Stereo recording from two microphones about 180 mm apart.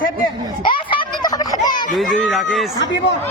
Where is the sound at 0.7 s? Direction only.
25° left (ahead or behind).